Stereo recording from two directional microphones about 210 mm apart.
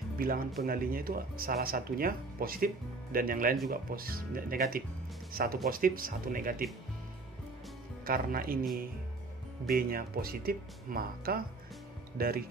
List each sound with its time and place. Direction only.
0.2 s speech: 45° right (ahead or behind)
8.0 s speech: 45° right (ahead or behind)
9.7 s speech: 45° right (ahead or behind)